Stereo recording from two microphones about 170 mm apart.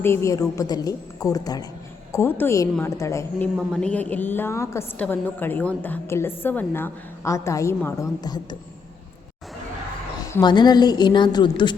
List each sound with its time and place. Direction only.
0.0 s a woman's voice: 15° left (ahead or behind)
10.4 s a woman's voice: 25° left (ahead or behind)